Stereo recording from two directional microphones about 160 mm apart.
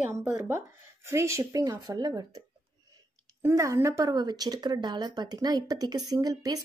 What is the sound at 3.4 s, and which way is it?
Speech, 20° right (ahead or behind).